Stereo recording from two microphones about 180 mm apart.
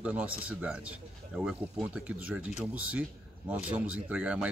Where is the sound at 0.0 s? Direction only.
5° right (ahead or behind).